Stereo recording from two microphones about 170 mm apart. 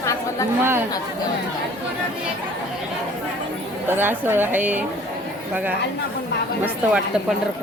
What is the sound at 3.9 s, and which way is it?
Speech, 10° right (ahead or behind).